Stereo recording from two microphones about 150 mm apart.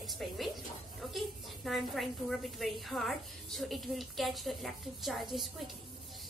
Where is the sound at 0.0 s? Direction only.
Centre (ahead or behind).